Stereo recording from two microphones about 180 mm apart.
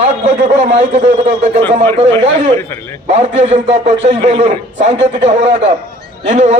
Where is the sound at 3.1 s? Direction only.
40° right (ahead or behind).